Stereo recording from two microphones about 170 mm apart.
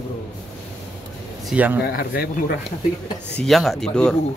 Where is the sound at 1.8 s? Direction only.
60° left (ahead or behind).